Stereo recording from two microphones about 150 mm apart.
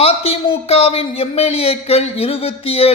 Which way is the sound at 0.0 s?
40° left (ahead or behind).